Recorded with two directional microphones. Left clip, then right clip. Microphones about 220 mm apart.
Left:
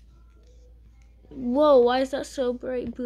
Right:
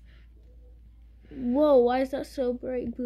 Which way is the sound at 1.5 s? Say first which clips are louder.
Left 3 dB; 10° right (ahead or behind).